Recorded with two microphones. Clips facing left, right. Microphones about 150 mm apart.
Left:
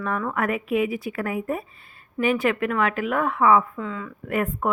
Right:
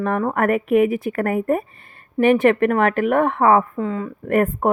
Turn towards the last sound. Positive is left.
turn(degrees=-55)  # may be behind; listen again after turning